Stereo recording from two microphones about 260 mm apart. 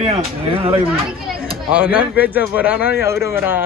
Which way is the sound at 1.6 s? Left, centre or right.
Centre.